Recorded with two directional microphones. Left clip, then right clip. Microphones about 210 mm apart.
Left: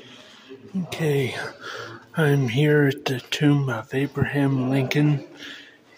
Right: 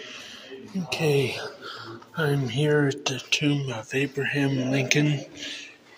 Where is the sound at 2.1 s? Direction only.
40° left (ahead or behind).